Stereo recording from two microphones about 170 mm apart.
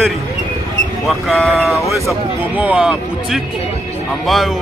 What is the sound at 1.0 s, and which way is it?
A man's voice, centre (ahead or behind).